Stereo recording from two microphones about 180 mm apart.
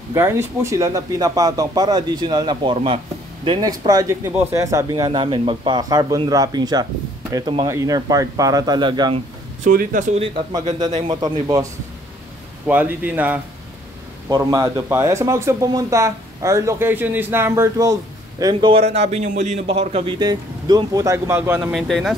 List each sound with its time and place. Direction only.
0.1 s a man's voice: 15° right (ahead or behind)
9.7 s speech: 50° right (ahead or behind)
10.1 s a man's voice: 30° right (ahead or behind)
12.6 s a man's voice: 10° right (ahead or behind)
21.7 s speech: centre (ahead or behind)